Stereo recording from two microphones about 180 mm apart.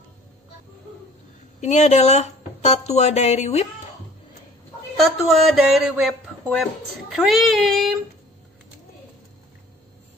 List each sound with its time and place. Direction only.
1.6 s speech: 40° left (ahead or behind)
5.3 s speech: centre (ahead or behind)